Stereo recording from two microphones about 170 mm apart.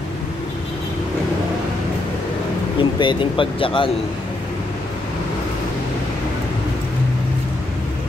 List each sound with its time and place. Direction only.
2.8 s speech: 30° left (ahead or behind)